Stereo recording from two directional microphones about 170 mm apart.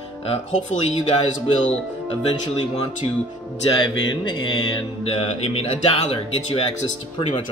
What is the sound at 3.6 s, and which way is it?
Speech, 25° left (ahead or behind).